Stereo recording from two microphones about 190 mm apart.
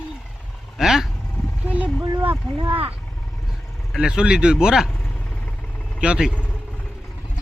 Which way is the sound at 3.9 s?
5° right (ahead or behind).